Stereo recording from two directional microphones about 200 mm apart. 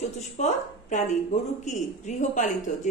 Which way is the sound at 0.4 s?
35° left (ahead or behind).